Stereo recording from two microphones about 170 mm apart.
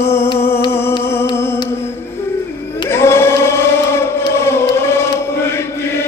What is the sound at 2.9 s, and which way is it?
Choir, 15° left (ahead or behind).